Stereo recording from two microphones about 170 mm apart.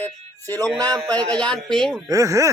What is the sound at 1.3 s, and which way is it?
Speech, 5° left (ahead or behind).